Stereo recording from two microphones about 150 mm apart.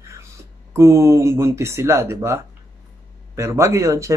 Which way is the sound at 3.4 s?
20° right (ahead or behind).